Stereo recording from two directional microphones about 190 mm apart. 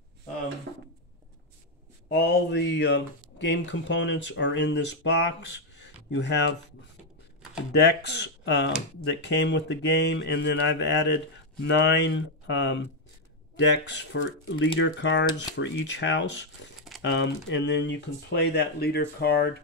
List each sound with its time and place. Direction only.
2.0 s speech: 60° left (ahead or behind)
7.7 s speech: 60° left (ahead or behind)